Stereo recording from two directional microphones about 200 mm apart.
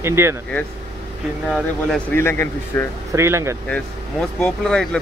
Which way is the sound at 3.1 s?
15° right (ahead or behind).